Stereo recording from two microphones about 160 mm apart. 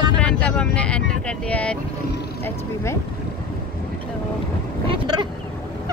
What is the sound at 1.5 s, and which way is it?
Speech, 5° left (ahead or behind).